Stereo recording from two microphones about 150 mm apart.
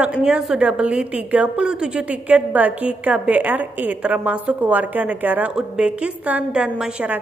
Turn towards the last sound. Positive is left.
turn(degrees=-5)  # may be behind; listen again after turning